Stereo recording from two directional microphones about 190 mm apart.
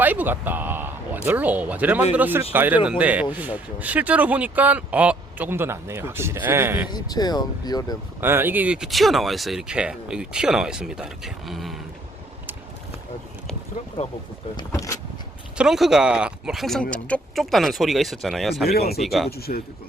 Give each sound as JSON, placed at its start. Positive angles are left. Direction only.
{"t": 0.0, "sound": "speech", "side_deg": -10}
{"t": 6.9, "sound": "speech", "side_deg": 20}
{"t": 8.2, "sound": "speech", "side_deg": -10}
{"t": 14.5, "sound": "speech", "side_deg": 15}
{"t": 15.5, "sound": "speech", "side_deg": 0}
{"t": 18.6, "sound": "speech", "side_deg": 55}
{"t": 18.9, "sound": "speech", "side_deg": 0}
{"t": 19.4, "sound": "speech", "side_deg": 55}